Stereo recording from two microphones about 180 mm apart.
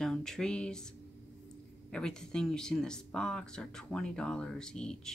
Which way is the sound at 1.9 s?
5° left (ahead or behind).